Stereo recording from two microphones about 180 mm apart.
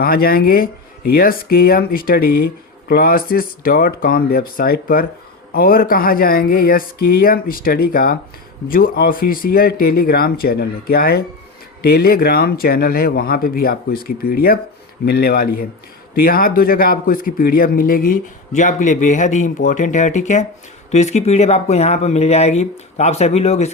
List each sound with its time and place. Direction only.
0.0 s speech: 55° left (ahead or behind); by 23.7 s 35° left (ahead or behind)